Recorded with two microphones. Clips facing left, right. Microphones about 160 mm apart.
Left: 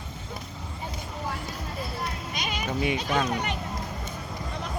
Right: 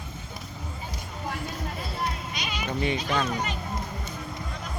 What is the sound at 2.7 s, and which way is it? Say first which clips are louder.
Speech: even; 10° left (ahead or behind).